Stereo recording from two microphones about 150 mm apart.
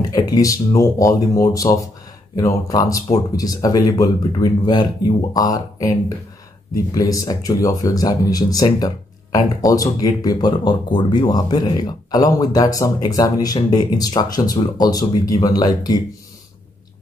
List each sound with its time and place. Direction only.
0.1 s speech: 25° left (ahead or behind)